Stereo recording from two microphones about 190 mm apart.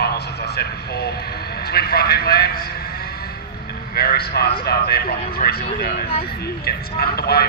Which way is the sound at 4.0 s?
55° left (ahead or behind).